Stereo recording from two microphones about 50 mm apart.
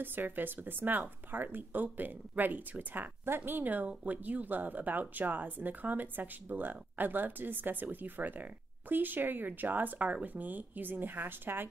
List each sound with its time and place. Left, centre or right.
0.0 s speech: right